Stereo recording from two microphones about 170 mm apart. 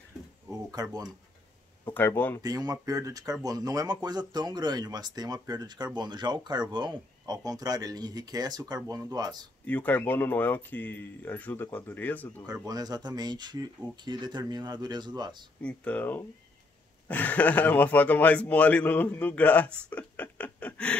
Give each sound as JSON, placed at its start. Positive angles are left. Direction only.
{"t": 0.5, "sound": "a sound", "side_deg": -20}
{"t": 2.0, "sound": "a man's voice", "side_deg": 10}
{"t": 2.4, "sound": "speech", "side_deg": -20}
{"t": 9.7, "sound": "a man's voice", "side_deg": 10}
{"t": 12.6, "sound": "speech", "side_deg": -25}
{"t": 15.6, "sound": "a man's voice", "side_deg": 10}